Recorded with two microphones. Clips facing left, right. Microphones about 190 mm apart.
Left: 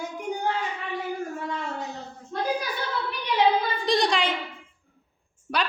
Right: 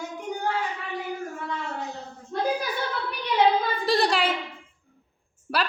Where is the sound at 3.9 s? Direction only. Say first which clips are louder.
Right 1 dB; 5° right (ahead or behind).